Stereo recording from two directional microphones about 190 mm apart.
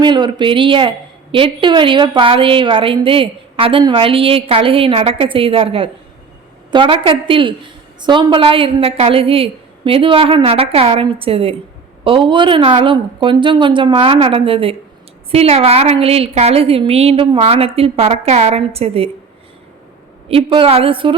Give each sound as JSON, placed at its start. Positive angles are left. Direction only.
{"t": 0.0, "sound": "a woman's voice", "side_deg": -25}
{"t": 20.2, "sound": "a woman's voice", "side_deg": -30}